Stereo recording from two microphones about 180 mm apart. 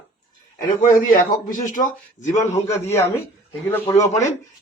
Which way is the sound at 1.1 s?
50° left (ahead or behind).